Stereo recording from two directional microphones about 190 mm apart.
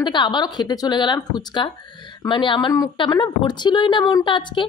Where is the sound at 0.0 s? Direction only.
25° left (ahead or behind).